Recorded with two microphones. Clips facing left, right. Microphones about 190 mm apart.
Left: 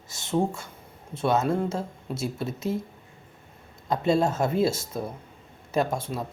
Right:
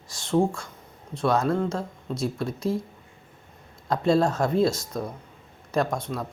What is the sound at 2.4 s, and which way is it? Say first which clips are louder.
Speech: right 1 dB; centre (ahead or behind).